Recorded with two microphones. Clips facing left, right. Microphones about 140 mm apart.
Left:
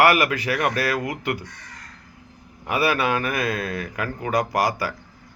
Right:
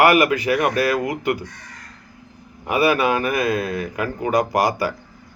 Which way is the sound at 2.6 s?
20° right (ahead or behind).